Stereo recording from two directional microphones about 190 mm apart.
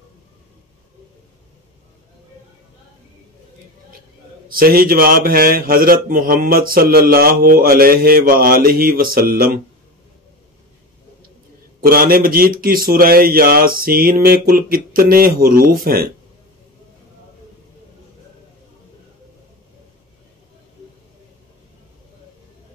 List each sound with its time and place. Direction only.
4.5 s a man's voice: 50° right (ahead or behind)
11.8 s a man's voice: 50° right (ahead or behind)